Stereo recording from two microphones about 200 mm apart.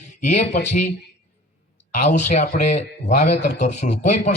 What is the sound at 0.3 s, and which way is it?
Speech, 35° left (ahead or behind).